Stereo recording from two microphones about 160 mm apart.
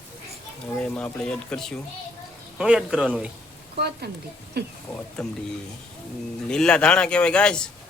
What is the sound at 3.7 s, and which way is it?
Speech, 85° right.